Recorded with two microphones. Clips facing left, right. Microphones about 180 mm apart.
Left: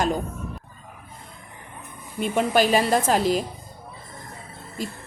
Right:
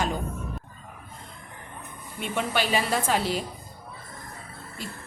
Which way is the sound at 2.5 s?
45° left (ahead or behind).